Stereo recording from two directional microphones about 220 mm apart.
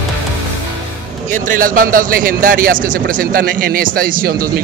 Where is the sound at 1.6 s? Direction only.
40° right (ahead or behind).